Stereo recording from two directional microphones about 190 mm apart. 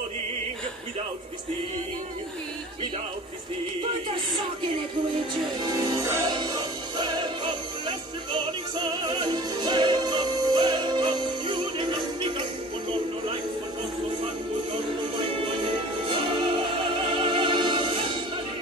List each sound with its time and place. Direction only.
5.6 s music: 15° right (ahead or behind)
15.3 s music: 30° right (ahead or behind)